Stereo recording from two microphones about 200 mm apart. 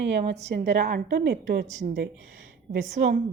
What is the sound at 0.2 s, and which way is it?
A woman's voice, 35° right (ahead or behind).